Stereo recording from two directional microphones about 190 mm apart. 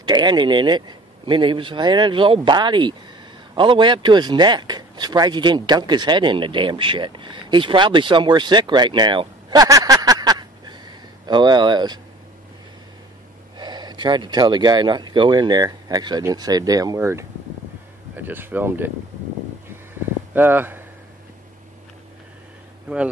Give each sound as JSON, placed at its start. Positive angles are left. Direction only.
{"t": 0.0, "sound": "speech", "side_deg": -25}
{"t": 13.6, "sound": "speech", "side_deg": -20}
{"t": 20.3, "sound": "speech", "side_deg": -10}